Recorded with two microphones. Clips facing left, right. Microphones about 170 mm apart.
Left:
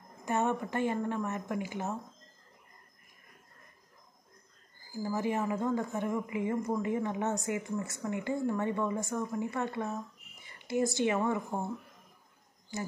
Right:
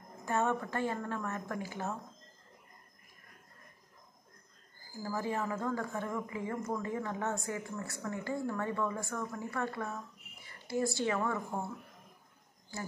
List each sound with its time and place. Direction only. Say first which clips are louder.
0.2 s a woman's voice: left 2 dB; 20° left (ahead or behind)
5.0 s a woman's voice: left 4 dB; 20° left (ahead or behind)
12.7 s speech: left 4 dB; 20° left (ahead or behind)